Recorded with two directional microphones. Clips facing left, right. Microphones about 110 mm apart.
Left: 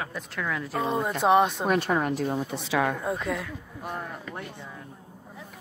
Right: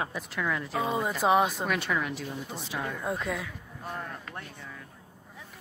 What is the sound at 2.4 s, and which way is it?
Speech, 80° left.